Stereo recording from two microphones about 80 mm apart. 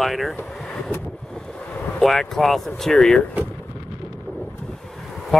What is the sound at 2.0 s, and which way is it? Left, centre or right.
Speech, centre.